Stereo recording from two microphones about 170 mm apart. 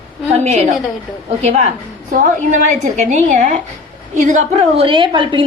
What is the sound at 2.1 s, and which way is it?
A woman's voice, 50° right (ahead or behind).